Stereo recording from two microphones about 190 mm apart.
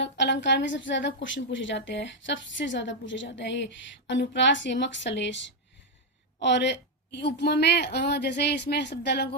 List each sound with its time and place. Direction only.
0.0 s a woman's voice: 70° left (ahead or behind)